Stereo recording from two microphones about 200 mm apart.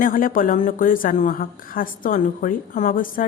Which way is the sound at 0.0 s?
45° left (ahead or behind).